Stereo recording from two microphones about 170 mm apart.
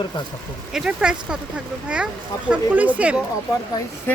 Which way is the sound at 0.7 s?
5° right (ahead or behind).